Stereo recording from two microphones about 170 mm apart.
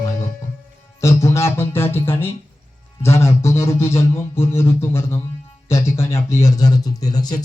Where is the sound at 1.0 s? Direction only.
15° left (ahead or behind).